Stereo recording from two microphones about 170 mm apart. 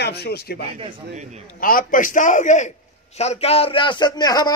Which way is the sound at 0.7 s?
30° right (ahead or behind).